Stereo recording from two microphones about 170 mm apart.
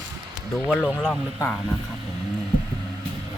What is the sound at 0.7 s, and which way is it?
Speech, centre (ahead or behind).